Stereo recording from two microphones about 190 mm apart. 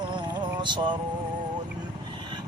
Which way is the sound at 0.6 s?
25° right (ahead or behind).